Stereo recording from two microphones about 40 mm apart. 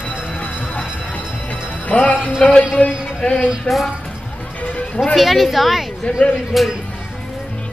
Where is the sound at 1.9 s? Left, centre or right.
Left.